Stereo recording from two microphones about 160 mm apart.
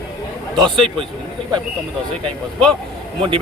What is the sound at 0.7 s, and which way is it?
Speech, 30° right (ahead or behind).